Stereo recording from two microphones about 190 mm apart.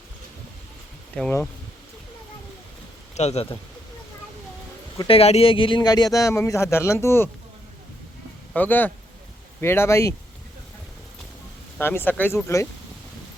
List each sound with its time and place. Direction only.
1.1 s speech: 10° left (ahead or behind)
3.2 s speech: 35° left (ahead or behind)
4.9 s speech: 30° left (ahead or behind); by 7.3 s 15° left (ahead or behind)
8.5 s speech: 10° left (ahead or behind)
11.8 s speech: 10° left (ahead or behind)